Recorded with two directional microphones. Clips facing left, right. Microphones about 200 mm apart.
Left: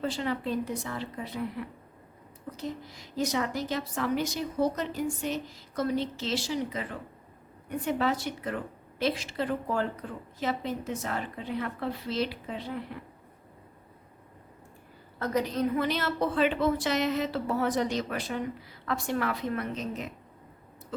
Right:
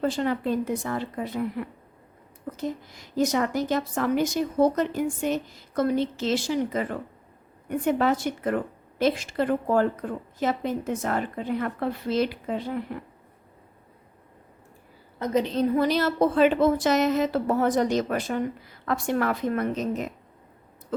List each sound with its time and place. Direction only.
0.0 s a woman's voice: 45° right (ahead or behind)
2.5 s a woman's voice: 50° right (ahead or behind)
7.9 s a woman's voice: 50° right (ahead or behind)
15.2 s a woman's voice: 25° right (ahead or behind); by 20.1 s 45° right (ahead or behind)